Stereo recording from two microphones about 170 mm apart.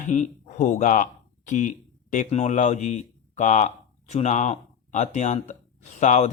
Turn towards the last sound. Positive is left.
turn(degrees=45)  # may be behind; listen again after turning